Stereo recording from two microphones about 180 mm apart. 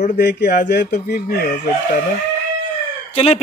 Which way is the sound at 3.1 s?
35° left (ahead or behind).